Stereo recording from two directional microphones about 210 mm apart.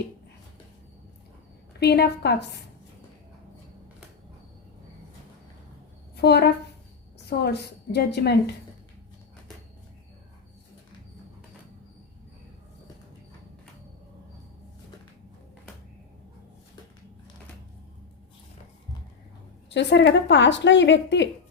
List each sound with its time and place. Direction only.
1.8 s a woman's voice: 50° left (ahead or behind)
6.1 s a woman's voice: 50° left (ahead or behind)
19.7 s speech: 55° left (ahead or behind)